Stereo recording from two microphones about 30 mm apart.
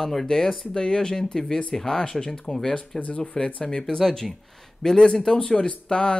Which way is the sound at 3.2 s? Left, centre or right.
Left.